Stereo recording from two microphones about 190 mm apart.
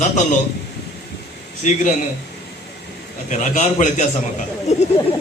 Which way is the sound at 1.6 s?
40° left (ahead or behind).